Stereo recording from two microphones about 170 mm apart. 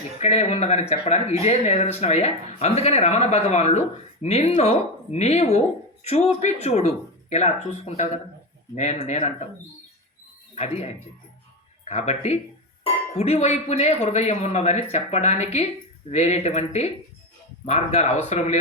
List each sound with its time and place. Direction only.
0.2 s speech: 40° left (ahead or behind)
10.5 s speech: 40° left (ahead or behind)